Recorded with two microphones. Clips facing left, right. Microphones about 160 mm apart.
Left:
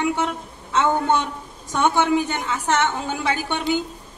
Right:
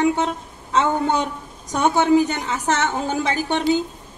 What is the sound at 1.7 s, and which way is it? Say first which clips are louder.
A woman's voice: right 2 dB; 40° right (ahead or behind).